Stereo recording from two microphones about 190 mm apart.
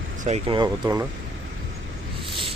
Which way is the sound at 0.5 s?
20° right (ahead or behind).